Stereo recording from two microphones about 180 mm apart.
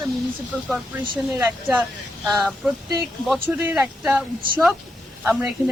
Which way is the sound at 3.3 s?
10° right (ahead or behind).